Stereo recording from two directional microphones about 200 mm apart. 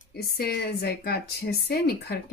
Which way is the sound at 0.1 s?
50° left (ahead or behind).